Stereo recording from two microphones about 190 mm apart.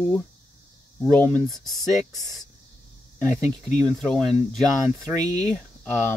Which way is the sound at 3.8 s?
5° left (ahead or behind).